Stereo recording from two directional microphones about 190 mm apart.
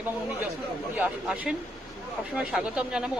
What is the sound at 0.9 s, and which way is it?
Speech, 5° right (ahead or behind).